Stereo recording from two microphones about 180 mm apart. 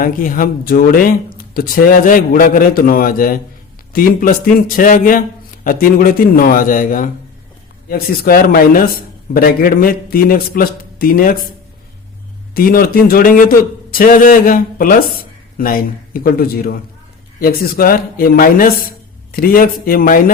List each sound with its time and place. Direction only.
0.0 s a man's voice: 50° left (ahead or behind)
12.5 s speech: 55° left (ahead or behind)